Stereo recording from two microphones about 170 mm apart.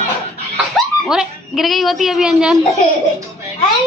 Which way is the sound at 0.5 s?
Centre (ahead or behind).